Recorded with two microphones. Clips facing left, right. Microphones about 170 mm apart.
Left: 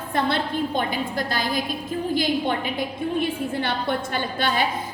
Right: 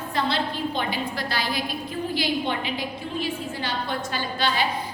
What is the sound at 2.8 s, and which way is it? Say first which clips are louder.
A woman's voice: left 5 dB; 55° left (ahead or behind).